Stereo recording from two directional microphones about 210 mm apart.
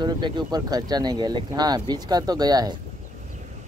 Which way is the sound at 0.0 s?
20° right (ahead or behind).